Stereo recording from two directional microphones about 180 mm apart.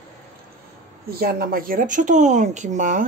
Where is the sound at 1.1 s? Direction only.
55° right (ahead or behind).